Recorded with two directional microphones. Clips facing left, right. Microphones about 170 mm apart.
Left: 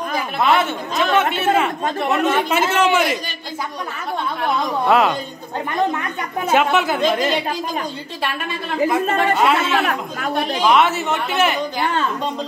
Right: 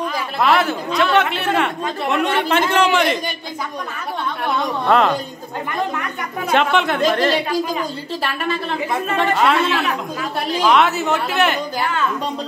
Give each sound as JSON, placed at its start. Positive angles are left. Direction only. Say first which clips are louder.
{"t": 0.4, "sound": "a man's voice", "louder": "right 1 dB", "side_deg": 0}
{"t": 4.8, "sound": "a man's voice", "louder": "even", "side_deg": 5}
{"t": 6.5, "sound": "speech", "louder": "even", "side_deg": 5}
{"t": 8.8, "sound": "a man's voice", "louder": "left 4 dB", "side_deg": 0}
{"t": 9.8, "sound": "speech", "louder": "even", "side_deg": 55}
{"t": 10.6, "sound": "a man's voice", "louder": "right 1 dB", "side_deg": 0}